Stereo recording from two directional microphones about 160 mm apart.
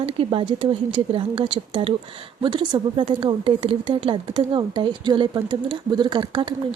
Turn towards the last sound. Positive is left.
turn(degrees=-30)  # may be behind; listen again after turning